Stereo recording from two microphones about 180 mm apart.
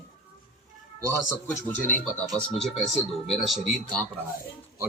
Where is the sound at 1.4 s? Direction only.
10° left (ahead or behind).